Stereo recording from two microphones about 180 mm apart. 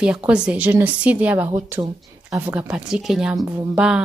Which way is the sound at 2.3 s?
10° right (ahead or behind).